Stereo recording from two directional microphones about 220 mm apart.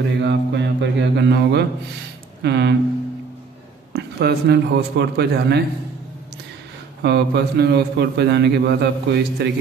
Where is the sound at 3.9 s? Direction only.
50° right (ahead or behind).